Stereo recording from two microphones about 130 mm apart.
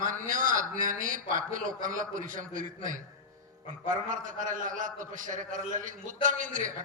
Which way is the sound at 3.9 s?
90° right.